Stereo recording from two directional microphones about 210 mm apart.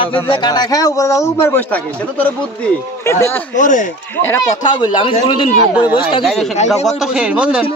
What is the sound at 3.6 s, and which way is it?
Speech, 35° left (ahead or behind).